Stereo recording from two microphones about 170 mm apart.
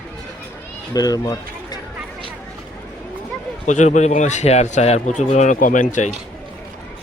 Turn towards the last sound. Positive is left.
turn(degrees=45)  # may be behind; listen again after turning